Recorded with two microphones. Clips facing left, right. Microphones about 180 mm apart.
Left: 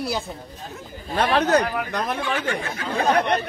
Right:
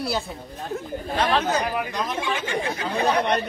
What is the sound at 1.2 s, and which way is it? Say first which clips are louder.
Speech: left 4 dB; 65° left (ahead or behind).